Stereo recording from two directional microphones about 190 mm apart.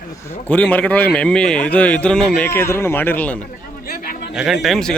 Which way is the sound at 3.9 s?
50° left (ahead or behind).